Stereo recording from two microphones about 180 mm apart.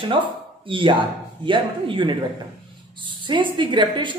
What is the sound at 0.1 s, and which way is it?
A man's voice, 30° right (ahead or behind).